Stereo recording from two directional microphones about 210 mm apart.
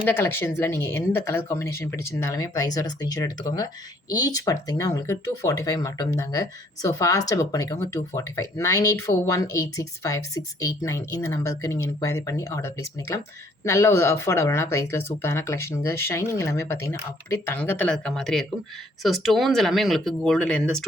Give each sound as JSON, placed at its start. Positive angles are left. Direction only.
{"t": 0.0, "sound": "speech", "side_deg": 10}